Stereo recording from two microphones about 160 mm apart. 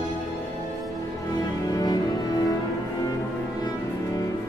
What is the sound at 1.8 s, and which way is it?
Music, 25° left (ahead or behind).